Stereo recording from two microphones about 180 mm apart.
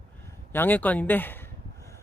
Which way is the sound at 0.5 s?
10° left (ahead or behind).